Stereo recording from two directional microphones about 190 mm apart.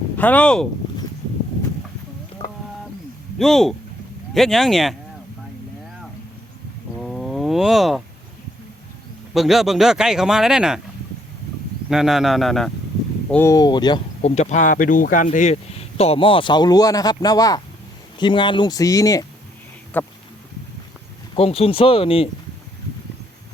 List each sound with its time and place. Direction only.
0.2 s speech: 10° left (ahead or behind)
2.4 s a sound: 25° left (ahead or behind)
3.3 s speech: centre (ahead or behind)
6.9 s wild animals: centre (ahead or behind)
9.3 s speech: centre (ahead or behind)
11.9 s speech: centre (ahead or behind)
13.3 s speech: 15° left (ahead or behind)
14.2 s speech: 35° left (ahead or behind); by 20.1 s 10° left (ahead or behind)
21.3 s speech: 30° left (ahead or behind)